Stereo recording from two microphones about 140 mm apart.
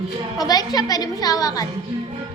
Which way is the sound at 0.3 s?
25° left (ahead or behind).